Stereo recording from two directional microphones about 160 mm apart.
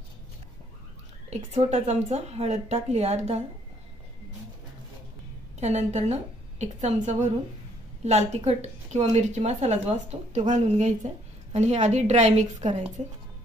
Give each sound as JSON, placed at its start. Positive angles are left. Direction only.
{"t": 1.3, "sound": "a woman's voice", "side_deg": -45}
{"t": 5.6, "sound": "a woman's voice", "side_deg": -45}